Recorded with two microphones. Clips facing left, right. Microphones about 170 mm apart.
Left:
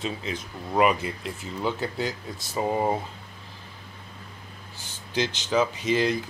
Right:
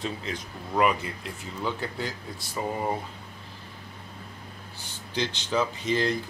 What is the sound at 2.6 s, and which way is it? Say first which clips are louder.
Speech: left 4 dB; 25° left (ahead or behind).